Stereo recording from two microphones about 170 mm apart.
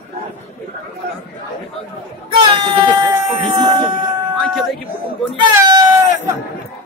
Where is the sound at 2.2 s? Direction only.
30° right (ahead or behind).